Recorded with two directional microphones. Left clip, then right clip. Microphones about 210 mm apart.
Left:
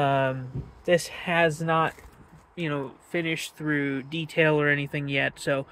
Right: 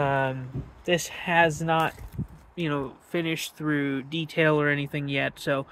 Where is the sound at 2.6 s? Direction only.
5° right (ahead or behind).